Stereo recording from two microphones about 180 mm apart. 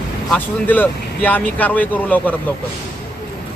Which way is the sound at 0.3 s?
10° left (ahead or behind).